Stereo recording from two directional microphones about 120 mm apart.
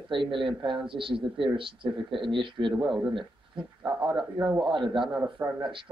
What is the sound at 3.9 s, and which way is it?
Speech, 5° right (ahead or behind).